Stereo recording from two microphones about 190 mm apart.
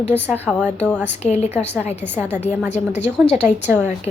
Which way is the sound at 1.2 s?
35° left (ahead or behind).